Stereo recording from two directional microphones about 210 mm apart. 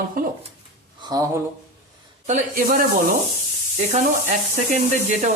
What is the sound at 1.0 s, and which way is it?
Speech, 20° right (ahead or behind).